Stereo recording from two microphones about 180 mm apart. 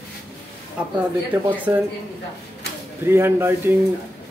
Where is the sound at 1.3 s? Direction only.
10° right (ahead or behind).